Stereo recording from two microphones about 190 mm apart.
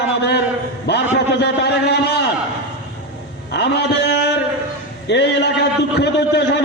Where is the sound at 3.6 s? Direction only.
65° left (ahead or behind).